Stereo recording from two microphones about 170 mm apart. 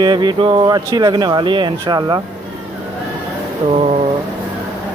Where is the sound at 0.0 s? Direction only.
25° right (ahead or behind).